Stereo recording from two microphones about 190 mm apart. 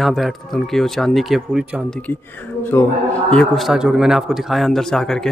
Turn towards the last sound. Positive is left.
turn(degrees=5)  # may be behind; listen again after turning